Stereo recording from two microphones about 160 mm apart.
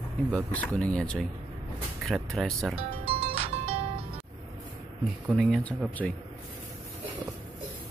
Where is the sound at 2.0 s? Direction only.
Centre (ahead or behind).